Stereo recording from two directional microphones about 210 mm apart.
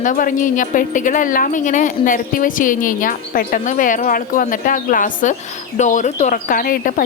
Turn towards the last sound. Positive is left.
turn(degrees=45)  # may be behind; listen again after turning